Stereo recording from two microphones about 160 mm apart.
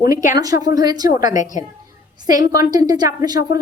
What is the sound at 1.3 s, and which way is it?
Speech, 50° left (ahead or behind).